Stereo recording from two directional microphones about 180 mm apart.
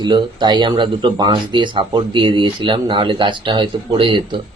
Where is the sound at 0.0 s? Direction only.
25° right (ahead or behind).